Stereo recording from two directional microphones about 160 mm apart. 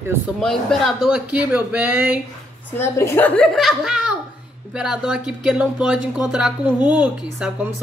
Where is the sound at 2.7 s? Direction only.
15° left (ahead or behind).